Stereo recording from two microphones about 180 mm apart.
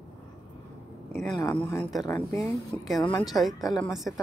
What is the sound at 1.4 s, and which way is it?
A woman's voice, 15° left (ahead or behind).